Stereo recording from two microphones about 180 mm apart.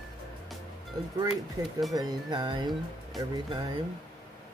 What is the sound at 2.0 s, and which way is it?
Speech, 25° right (ahead or behind).